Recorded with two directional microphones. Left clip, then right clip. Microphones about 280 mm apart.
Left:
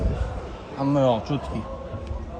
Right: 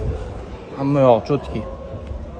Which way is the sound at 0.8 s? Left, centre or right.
Right.